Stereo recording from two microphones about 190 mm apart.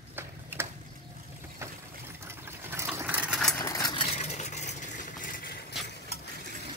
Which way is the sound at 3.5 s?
15° left (ahead or behind).